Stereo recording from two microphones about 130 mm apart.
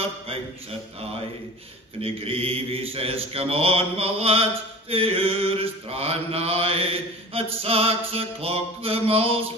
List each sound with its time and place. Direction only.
2.0 s mantra: 45° right (ahead or behind)